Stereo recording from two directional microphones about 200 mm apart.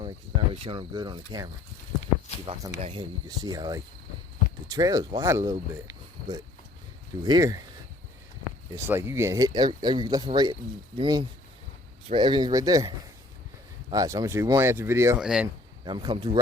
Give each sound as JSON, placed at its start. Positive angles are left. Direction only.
{"t": 0.5, "sound": "speech", "side_deg": -25}
{"t": 2.5, "sound": "speech", "side_deg": -30}
{"t": 8.7, "sound": "speech", "side_deg": -15}
{"t": 13.9, "sound": "speech", "side_deg": -20}